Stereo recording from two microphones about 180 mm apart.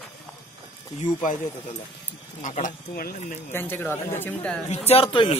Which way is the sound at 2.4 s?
45° left (ahead or behind).